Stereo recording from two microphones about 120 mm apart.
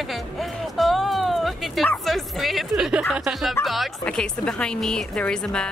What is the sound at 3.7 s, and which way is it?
A woman's voice, 5° left (ahead or behind).